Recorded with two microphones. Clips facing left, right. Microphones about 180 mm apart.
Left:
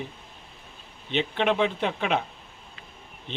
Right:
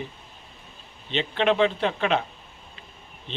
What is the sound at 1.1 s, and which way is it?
Speech, 10° left (ahead or behind).